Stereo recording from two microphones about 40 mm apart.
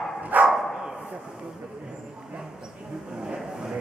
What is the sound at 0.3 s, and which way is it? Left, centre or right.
Dog, right.